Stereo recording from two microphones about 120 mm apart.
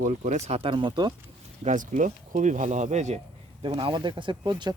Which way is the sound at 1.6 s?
85° right.